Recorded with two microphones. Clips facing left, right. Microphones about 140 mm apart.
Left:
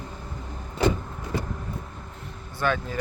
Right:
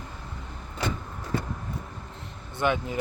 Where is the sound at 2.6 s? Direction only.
20° right (ahead or behind).